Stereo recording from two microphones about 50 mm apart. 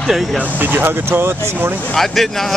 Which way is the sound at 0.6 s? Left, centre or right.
Right.